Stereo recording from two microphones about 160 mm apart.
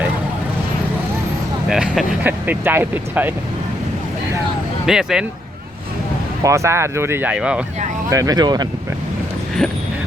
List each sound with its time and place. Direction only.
1.7 s speech: 5° right (ahead or behind)
4.9 s speech: 5° right (ahead or behind)
6.4 s speech: 20° right (ahead or behind)
8.1 s speech: 20° right (ahead or behind)
9.6 s speech: 5° left (ahead or behind)